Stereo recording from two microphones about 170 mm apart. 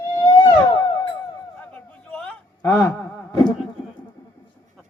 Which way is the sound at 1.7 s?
5° left (ahead or behind).